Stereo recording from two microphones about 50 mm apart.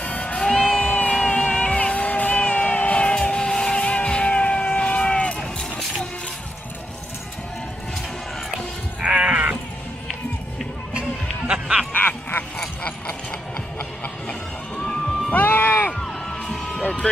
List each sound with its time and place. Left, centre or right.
0.0 s music: left
0.4 s music: centre
0.8 s music: left
1.1 s music: centre
9.0 s sheep: right
10.9 s run: right
11.9 s a sound: left
15.3 s music: left
15.9 s music: centre
16.8 s music: left